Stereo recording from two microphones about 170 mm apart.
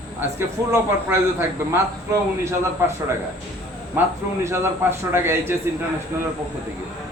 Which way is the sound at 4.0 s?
10° right (ahead or behind).